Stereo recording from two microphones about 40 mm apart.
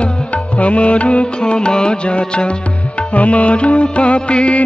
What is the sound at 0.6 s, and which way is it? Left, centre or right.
Music, left.